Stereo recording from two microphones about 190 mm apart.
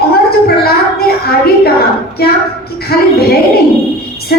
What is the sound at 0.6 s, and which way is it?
A woman's voice, 55° left (ahead or behind).